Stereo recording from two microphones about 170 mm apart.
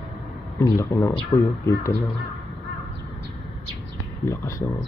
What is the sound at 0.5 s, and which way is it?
Speech, 20° left (ahead or behind).